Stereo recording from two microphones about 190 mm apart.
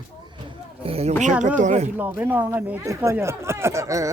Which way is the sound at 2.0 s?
10° right (ahead or behind).